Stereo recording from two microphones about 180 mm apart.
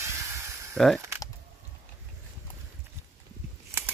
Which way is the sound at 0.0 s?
15° right (ahead or behind).